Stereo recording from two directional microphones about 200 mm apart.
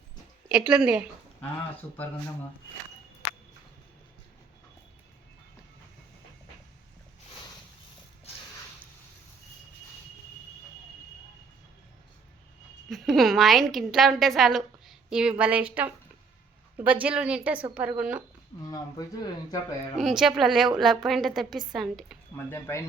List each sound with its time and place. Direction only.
0.4 s a woman's voice: 5° right (ahead or behind)
12.9 s a woman's voice: centre (ahead or behind)
16.7 s a woman's voice: 10° right (ahead or behind)
18.6 s speech: 20° left (ahead or behind)
20.0 s a woman's voice: centre (ahead or behind)
22.4 s speech: 10° left (ahead or behind)